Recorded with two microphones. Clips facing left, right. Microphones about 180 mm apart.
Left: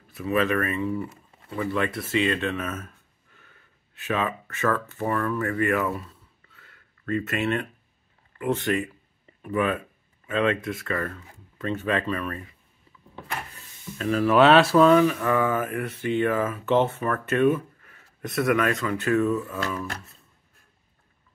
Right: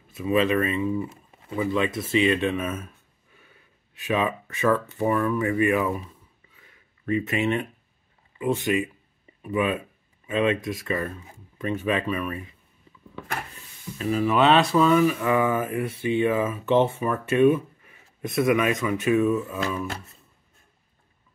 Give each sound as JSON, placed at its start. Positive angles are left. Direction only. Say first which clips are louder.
{"t": 0.2, "sound": "speech", "louder": "right 2 dB", "side_deg": -20}
{"t": 14.0, "sound": "speech", "louder": "left 2 dB", "side_deg": 0}
{"t": 15.0, "sound": "speech", "louder": "right 1 dB", "side_deg": -10}